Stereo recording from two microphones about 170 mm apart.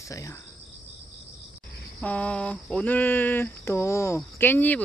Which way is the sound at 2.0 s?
5° left (ahead or behind).